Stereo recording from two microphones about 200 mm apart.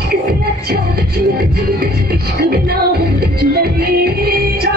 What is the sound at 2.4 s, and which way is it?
Music, 50° right (ahead or behind).